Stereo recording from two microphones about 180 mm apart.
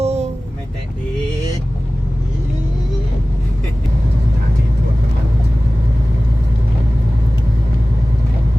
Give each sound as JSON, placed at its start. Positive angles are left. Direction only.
{"t": 0.0, "sound": "vehicle", "side_deg": -35}